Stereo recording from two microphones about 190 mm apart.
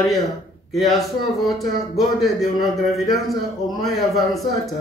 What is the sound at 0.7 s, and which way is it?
Speech, centre (ahead or behind).